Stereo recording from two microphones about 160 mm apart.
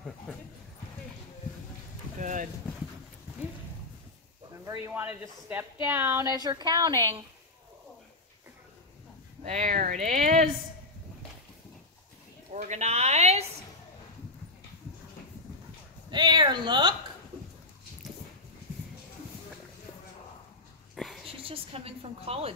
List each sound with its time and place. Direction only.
2.1 s clip-clop: 55° right (ahead or behind)
4.6 s speech: 15° right (ahead or behind)
9.4 s a woman's voice: 50° right (ahead or behind)
12.5 s a woman's voice: 45° right (ahead or behind)
16.1 s speech: 30° right (ahead or behind)
20.9 s a sound: centre (ahead or behind)
21.3 s a woman's voice: 35° right (ahead or behind)